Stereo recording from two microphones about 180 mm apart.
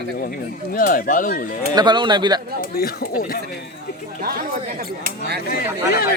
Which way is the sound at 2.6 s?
55° left (ahead or behind).